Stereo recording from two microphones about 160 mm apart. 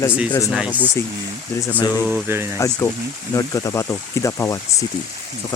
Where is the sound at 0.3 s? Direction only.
20° left (ahead or behind).